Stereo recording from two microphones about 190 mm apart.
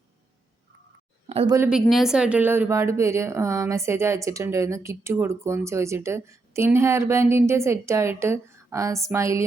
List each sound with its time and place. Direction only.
1.3 s speech: 30° right (ahead or behind)
1.5 s speech: 10° right (ahead or behind)